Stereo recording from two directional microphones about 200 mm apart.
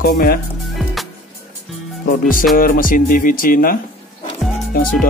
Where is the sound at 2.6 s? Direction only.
45° left (ahead or behind).